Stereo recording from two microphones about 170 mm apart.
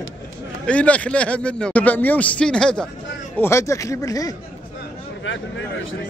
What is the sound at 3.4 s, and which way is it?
Speech, 15° left (ahead or behind).